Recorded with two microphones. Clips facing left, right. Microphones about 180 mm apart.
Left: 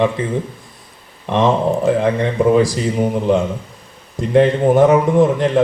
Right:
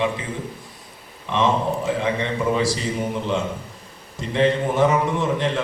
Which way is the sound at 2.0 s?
45° left (ahead or behind).